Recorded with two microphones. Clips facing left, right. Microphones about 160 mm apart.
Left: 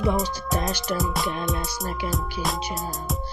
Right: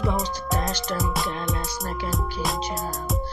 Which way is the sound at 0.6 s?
10° left (ahead or behind).